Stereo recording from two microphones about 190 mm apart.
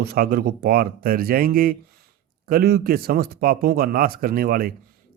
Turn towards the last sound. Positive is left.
turn(degrees=-50)  # may be behind; listen again after turning